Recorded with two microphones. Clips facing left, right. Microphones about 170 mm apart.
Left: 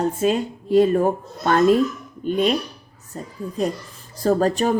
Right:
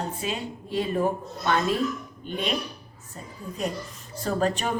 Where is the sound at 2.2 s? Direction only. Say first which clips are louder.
Left 11 dB; 45° left (ahead or behind).